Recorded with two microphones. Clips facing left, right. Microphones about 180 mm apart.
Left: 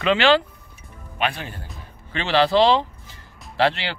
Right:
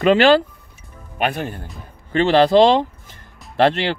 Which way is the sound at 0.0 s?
45° right (ahead or behind).